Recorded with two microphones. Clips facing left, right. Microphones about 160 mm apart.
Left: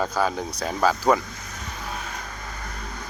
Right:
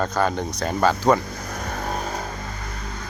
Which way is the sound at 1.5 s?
55° right (ahead or behind).